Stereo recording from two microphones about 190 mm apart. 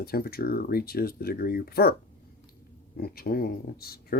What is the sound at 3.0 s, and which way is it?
Speech, 55° left (ahead or behind).